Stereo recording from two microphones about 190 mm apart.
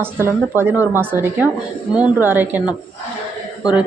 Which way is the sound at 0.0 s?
10° right (ahead or behind).